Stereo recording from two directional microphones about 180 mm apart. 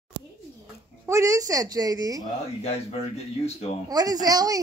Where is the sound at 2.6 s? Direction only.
35° left (ahead or behind).